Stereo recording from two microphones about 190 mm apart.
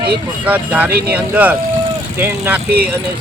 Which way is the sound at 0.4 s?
10° right (ahead or behind).